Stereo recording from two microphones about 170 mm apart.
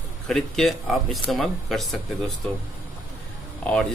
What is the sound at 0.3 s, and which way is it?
Speech, centre (ahead or behind).